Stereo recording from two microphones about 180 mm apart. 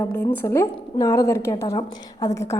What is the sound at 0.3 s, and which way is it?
A woman's voice, 15° left (ahead or behind).